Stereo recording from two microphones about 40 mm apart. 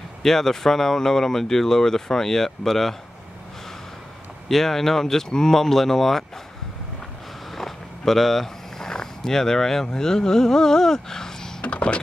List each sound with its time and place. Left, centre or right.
0.2 s speech: centre
4.5 s speech: centre
7.5 s speech: centre
11.6 s speech: left